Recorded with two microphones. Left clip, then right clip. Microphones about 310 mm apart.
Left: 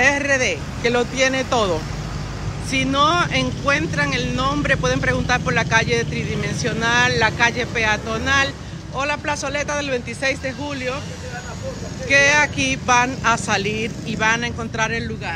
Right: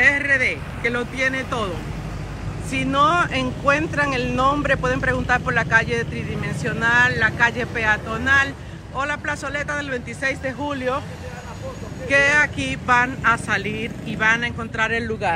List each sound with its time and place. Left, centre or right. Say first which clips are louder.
0.0 s speech: even; centre
2.7 s speech: left 1 dB; centre
12.1 s speech: left 2 dB; centre